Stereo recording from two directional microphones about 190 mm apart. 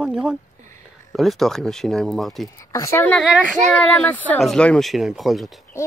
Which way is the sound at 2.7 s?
15° left (ahead or behind).